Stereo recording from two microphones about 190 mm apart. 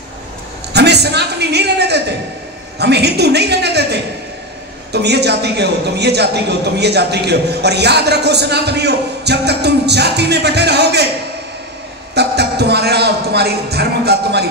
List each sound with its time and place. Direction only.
0.7 s a man's voice: 60° right (ahead or behind)
12.1 s a man's voice: 60° right (ahead or behind)